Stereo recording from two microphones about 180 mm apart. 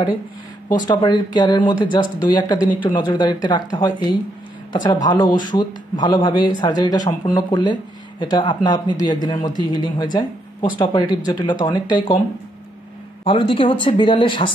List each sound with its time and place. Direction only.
0.8 s speech: 25° left (ahead or behind)
13.2 s speech: 30° left (ahead or behind)